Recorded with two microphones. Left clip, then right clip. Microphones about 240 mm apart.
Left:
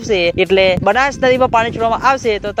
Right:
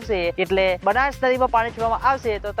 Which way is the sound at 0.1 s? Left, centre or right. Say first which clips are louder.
Left 8 dB; left.